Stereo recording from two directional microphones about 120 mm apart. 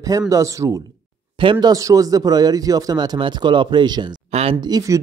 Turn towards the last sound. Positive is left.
turn(degrees=-30)  # may be behind; listen again after turning